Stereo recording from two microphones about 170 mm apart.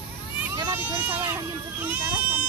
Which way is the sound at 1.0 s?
10° right (ahead or behind).